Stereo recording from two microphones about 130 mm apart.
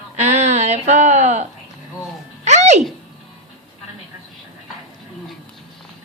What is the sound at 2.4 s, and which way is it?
Music, 60° right (ahead or behind).